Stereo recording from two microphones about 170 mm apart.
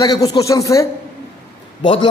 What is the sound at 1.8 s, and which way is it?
Speech, 30° left (ahead or behind).